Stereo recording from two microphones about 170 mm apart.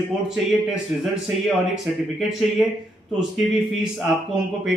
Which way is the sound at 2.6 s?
5° right (ahead or behind).